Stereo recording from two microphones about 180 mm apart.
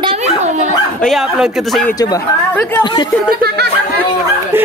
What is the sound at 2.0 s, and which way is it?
Speech, 20° left (ahead or behind).